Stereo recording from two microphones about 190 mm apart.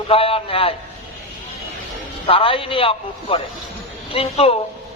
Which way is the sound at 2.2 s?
30° left (ahead or behind).